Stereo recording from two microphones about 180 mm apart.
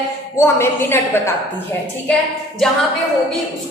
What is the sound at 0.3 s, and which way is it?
Speech, 15° left (ahead or behind).